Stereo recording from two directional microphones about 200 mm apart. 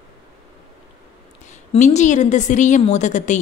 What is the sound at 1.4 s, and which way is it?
A woman's voice, 35° left (ahead or behind).